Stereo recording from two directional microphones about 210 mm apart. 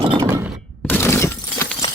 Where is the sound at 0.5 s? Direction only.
5° left (ahead or behind).